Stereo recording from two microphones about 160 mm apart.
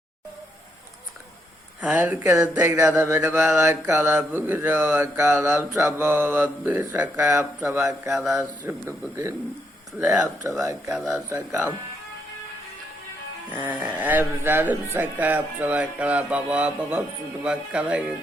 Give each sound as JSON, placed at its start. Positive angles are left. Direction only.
{"t": 1.8, "sound": "mantra", "side_deg": -10}
{"t": 8.1, "sound": "speech", "side_deg": -5}
{"t": 8.6, "sound": "mantra", "side_deg": -15}
{"t": 10.0, "sound": "speech", "side_deg": 0}
{"t": 10.6, "sound": "speech", "side_deg": -20}
{"t": 10.9, "sound": "speech", "side_deg": 0}
{"t": 11.3, "sound": "mantra", "side_deg": -15}
{"t": 13.5, "sound": "mantra", "side_deg": -10}